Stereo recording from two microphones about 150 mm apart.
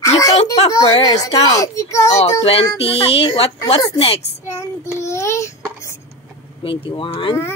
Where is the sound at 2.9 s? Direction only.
40° left (ahead or behind).